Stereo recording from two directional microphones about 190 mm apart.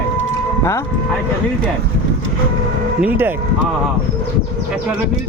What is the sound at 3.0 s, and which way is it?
Speech, 10° right (ahead or behind).